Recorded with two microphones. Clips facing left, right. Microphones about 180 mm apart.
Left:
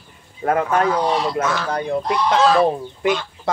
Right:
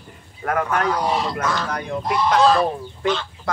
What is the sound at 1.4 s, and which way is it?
Speech, 5° left (ahead or behind).